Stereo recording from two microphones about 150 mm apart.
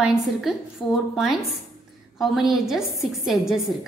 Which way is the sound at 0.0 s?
5° right (ahead or behind).